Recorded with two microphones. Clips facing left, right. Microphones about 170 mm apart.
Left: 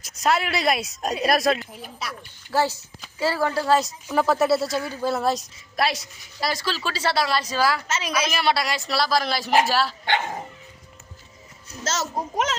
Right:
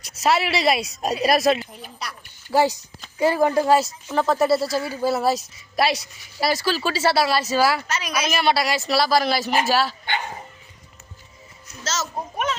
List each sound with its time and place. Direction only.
0.0 s a woman's voice: centre (ahead or behind)
2.5 s a woman's voice: 15° right (ahead or behind)
3.8 s a woman's voice: 5° left (ahead or behind)
7.9 s a woman's voice: 25° left (ahead or behind)
8.3 s a woman's voice: centre (ahead or behind)
11.8 s a sound: 55° left (ahead or behind)